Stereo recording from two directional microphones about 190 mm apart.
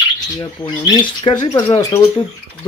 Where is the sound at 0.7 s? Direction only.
20° left (ahead or behind).